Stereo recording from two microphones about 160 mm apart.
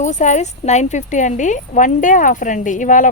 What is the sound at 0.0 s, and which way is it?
A woman's voice, 50° left (ahead or behind).